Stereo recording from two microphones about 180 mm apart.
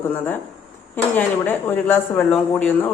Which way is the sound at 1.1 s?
10° left (ahead or behind).